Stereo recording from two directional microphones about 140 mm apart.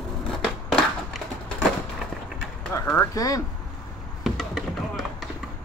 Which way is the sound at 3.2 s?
25° left (ahead or behind).